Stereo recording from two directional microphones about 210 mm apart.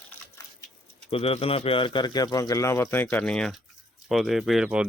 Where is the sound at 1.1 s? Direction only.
25° left (ahead or behind).